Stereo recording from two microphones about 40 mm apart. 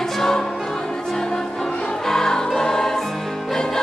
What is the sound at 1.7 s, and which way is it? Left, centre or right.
Music, left.